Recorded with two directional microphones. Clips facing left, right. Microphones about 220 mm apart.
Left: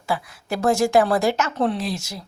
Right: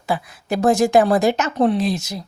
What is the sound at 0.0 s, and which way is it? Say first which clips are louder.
Speech: right 2 dB; 20° right (ahead or behind).